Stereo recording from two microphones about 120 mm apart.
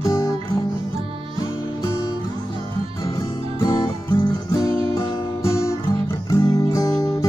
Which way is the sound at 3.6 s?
35° left (ahead or behind).